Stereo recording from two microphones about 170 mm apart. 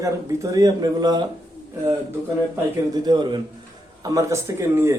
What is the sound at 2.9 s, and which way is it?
Speech, 25° right (ahead or behind).